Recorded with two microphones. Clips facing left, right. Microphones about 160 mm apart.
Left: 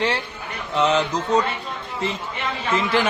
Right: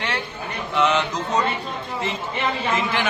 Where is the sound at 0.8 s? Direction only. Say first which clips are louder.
Left 1 dB; 35° left (ahead or behind).